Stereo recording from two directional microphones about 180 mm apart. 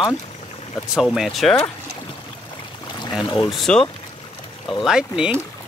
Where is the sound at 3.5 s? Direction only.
5° left (ahead or behind).